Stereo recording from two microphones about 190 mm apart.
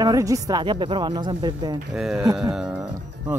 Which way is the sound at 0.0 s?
15° right (ahead or behind).